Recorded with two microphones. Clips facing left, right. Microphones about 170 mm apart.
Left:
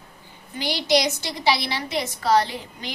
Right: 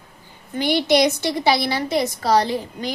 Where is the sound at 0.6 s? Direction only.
55° right (ahead or behind).